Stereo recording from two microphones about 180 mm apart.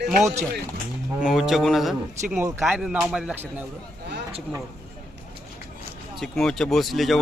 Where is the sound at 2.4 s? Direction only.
15° right (ahead or behind).